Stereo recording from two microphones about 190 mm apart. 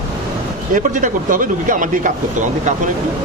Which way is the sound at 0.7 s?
40° right (ahead or behind).